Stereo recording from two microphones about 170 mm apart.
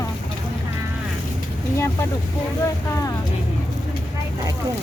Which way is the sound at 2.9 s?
20° left (ahead or behind).